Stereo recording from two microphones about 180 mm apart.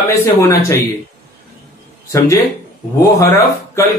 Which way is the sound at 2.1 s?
20° left (ahead or behind).